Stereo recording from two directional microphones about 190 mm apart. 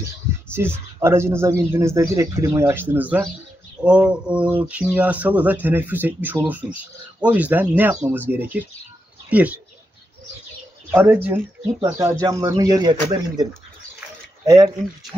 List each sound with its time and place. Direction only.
0.5 s speech: 10° right (ahead or behind)
10.9 s speech: 10° right (ahead or behind)